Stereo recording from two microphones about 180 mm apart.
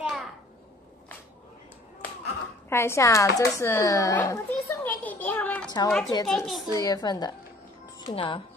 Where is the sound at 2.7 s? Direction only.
15° left (ahead or behind).